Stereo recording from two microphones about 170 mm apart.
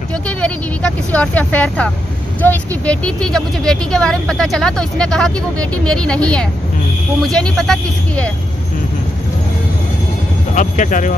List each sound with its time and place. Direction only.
0.4 s speech: 5° left (ahead or behind)
10.5 s speech: 50° left (ahead or behind)